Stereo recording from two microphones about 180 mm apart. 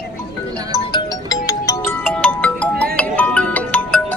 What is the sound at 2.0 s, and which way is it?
Music, 5° left (ahead or behind).